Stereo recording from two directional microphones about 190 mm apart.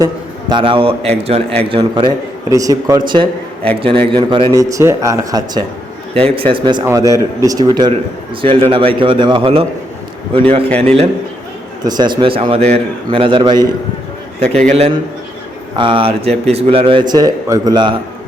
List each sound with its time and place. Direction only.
0.0 s a man's voice: 25° right (ahead or behind)
6.1 s a man's voice: 30° right (ahead or behind)
10.8 s a man's voice: 30° right (ahead or behind)
11.8 s a man's voice: 20° right (ahead or behind)
14.4 s a man's voice: 5° left (ahead or behind)
14.7 s a man's voice: 35° right (ahead or behind)